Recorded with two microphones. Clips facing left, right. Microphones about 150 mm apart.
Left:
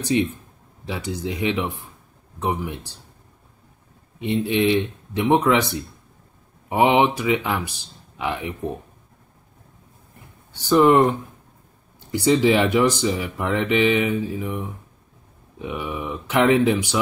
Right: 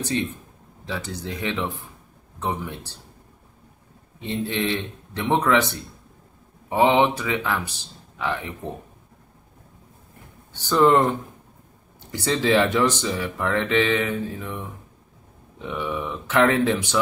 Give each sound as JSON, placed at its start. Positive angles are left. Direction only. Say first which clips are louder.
{"t": 0.1, "sound": "speech", "louder": "left 8 dB", "side_deg": 15}
{"t": 4.2, "sound": "speech", "louder": "left 5 dB", "side_deg": 15}
{"t": 10.5, "sound": "speech", "louder": "left 2 dB", "side_deg": 15}
{"t": 12.1, "sound": "speech", "louder": "left 4 dB", "side_deg": 15}